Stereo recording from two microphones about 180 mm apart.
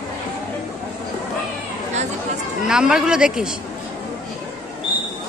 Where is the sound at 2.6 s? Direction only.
5° right (ahead or behind).